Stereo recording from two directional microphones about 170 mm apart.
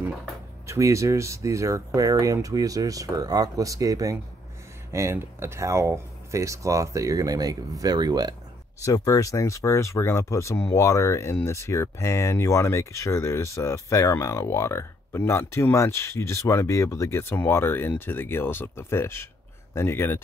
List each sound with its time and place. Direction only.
0.7 s speech: 15° right (ahead or behind)
8.8 s speech: 20° left (ahead or behind)